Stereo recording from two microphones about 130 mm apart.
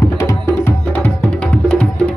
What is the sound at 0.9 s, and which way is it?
Music, 10° left (ahead or behind).